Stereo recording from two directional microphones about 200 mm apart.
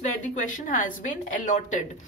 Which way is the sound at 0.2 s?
40° left (ahead or behind).